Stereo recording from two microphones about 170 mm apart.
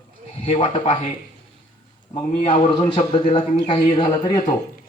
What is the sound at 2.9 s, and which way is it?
A man's voice, 30° left (ahead or behind).